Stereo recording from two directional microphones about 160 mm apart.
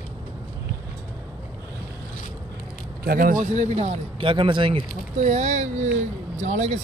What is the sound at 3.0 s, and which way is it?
Speech, 65° right (ahead or behind).